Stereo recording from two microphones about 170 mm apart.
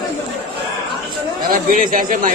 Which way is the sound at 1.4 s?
55° right (ahead or behind).